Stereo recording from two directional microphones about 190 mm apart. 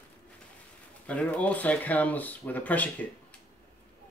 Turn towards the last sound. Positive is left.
turn(degrees=10)  # may be behind; listen again after turning